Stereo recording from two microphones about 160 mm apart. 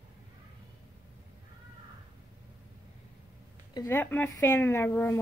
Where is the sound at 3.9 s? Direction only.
10° left (ahead or behind).